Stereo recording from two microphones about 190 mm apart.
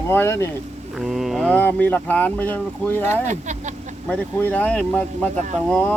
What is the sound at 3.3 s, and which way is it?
Speech, 40° right (ahead or behind).